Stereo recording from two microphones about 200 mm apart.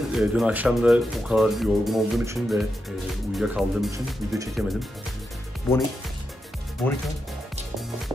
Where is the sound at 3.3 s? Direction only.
Centre (ahead or behind).